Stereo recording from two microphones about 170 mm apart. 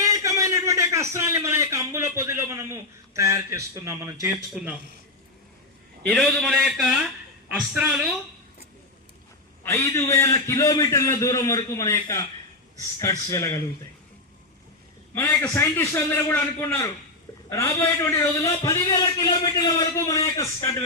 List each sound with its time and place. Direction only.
0.0 s a sound: 20° right (ahead or behind)
4.5 s a man's voice: 5° right (ahead or behind)
6.1 s a man's voice: centre (ahead or behind)
9.6 s a man's voice: 15° left (ahead or behind)
15.1 s a man's voice: 15° left (ahead or behind)